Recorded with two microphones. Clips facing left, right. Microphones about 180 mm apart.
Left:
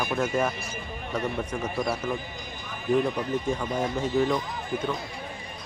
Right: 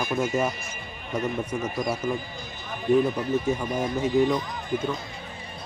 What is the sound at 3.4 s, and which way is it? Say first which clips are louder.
Speech: right 1 dB; 10° right (ahead or behind).